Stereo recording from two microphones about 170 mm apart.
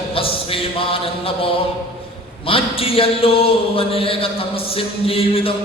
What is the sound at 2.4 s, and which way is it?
A man's voice, 35° left (ahead or behind).